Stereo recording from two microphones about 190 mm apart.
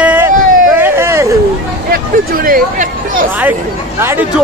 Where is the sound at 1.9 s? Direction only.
50° right (ahead or behind).